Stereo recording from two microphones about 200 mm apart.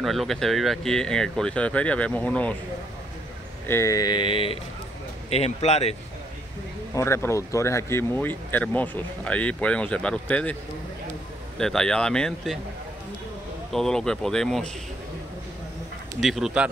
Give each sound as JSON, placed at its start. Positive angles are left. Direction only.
{"t": 0.0, "sound": "speech", "side_deg": 0}
{"t": 3.6, "sound": "speech", "side_deg": 15}
{"t": 7.0, "sound": "speech", "side_deg": 15}
{"t": 13.7, "sound": "speech", "side_deg": 0}
{"t": 16.2, "sound": "speech", "side_deg": 0}